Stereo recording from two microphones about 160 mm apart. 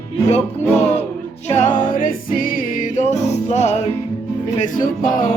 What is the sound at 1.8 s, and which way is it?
Music, 60° left (ahead or behind).